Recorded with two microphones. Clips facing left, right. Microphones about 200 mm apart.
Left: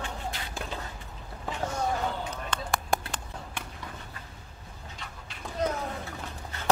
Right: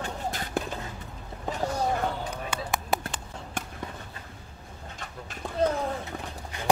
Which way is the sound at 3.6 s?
45° right (ahead or behind).